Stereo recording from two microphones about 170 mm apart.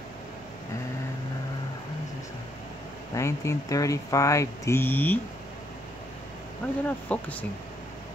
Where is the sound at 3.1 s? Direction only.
15° left (ahead or behind).